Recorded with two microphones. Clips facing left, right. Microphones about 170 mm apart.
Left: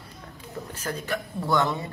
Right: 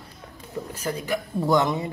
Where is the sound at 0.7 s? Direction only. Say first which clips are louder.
Right 3 dB; 10° right (ahead or behind).